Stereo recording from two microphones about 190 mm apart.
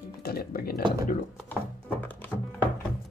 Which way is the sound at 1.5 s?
10° left (ahead or behind).